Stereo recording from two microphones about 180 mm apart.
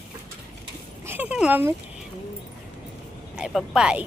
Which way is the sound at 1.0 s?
10° right (ahead or behind).